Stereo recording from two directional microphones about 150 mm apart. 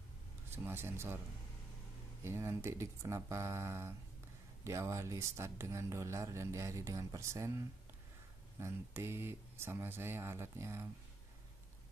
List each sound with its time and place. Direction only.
0.5 s speech: 15° right (ahead or behind)
2.2 s speech: 15° right (ahead or behind)